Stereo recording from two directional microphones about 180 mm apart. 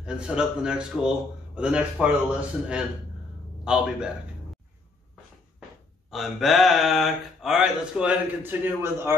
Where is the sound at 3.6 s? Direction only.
5° right (ahead or behind).